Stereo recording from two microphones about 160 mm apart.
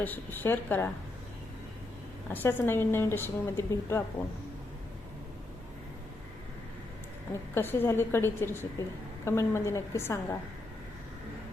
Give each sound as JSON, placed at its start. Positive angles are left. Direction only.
{"t": 0.0, "sound": "a woman's voice", "side_deg": 10}
{"t": 2.3, "sound": "a woman's voice", "side_deg": 10}
{"t": 7.5, "sound": "a woman's voice", "side_deg": 15}